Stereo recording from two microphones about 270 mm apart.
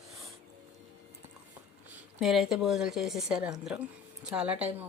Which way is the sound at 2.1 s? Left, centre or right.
Centre.